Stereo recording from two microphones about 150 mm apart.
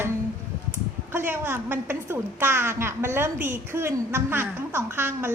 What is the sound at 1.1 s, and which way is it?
A woman's voice, 15° right (ahead or behind).